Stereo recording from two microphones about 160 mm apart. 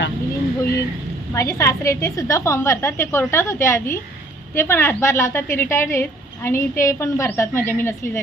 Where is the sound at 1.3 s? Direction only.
20° left (ahead or behind).